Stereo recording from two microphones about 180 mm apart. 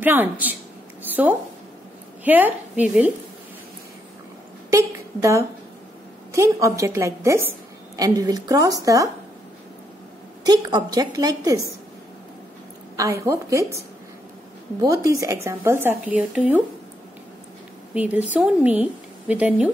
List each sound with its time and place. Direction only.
0.0 s a woman's voice: 10° right (ahead or behind)
1.0 s a sound: 10° right (ahead or behind)
2.2 s a woman's voice: 10° right (ahead or behind)
4.6 s a woman's voice: 15° right (ahead or behind)
10.4 s a woman's voice: 20° right (ahead or behind)
13.2 s a woman's voice: 15° right (ahead or behind)
17.9 s a woman's voice: 10° right (ahead or behind)